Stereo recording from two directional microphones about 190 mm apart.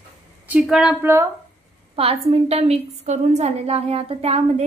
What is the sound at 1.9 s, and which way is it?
A woman's voice, 30° right (ahead or behind).